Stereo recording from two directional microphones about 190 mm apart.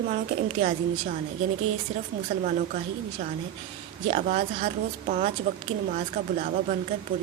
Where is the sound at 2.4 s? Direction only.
40° right (ahead or behind).